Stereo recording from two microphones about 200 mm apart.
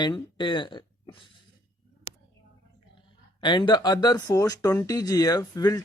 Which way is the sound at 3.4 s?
25° left (ahead or behind).